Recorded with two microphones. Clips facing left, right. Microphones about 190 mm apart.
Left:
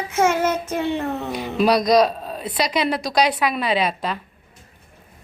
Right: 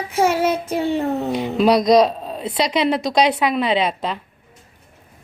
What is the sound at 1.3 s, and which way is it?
A woman's voice, 25° right (ahead or behind).